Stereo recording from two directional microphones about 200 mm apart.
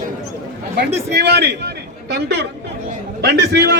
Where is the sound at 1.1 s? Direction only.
55° right (ahead or behind).